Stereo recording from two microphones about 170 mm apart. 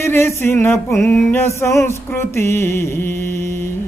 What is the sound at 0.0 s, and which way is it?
Mantra, 15° left (ahead or behind).